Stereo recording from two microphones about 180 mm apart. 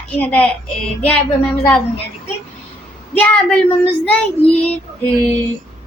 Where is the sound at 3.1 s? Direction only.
10° left (ahead or behind).